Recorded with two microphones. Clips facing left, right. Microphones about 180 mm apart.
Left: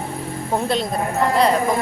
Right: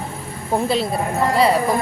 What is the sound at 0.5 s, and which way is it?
Speech, 5° right (ahead or behind).